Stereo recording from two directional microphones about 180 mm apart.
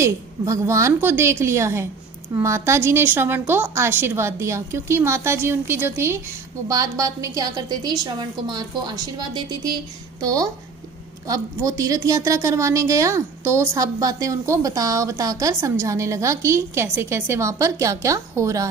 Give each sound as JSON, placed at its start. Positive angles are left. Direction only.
{"t": 0.0, "sound": "a woman's voice", "side_deg": -15}